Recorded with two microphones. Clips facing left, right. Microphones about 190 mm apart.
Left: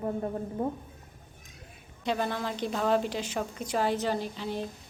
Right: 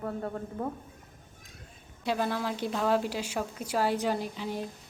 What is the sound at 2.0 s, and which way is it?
A woman's voice, 5° right (ahead or behind).